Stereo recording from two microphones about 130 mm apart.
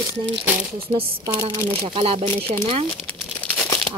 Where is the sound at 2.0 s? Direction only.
45° right (ahead or behind).